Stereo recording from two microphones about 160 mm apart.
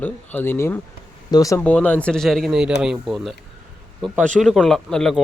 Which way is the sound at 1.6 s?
10° left (ahead or behind).